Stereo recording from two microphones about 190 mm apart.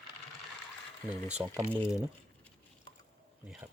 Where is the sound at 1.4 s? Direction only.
15° right (ahead or behind).